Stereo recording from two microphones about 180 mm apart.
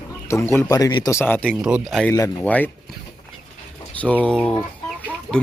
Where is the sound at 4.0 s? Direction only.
10° left (ahead or behind).